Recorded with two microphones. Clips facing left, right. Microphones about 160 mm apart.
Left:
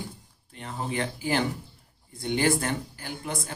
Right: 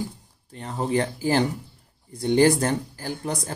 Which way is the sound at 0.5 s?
35° right (ahead or behind).